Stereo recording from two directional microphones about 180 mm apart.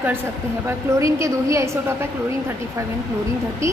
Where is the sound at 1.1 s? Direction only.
15° right (ahead or behind).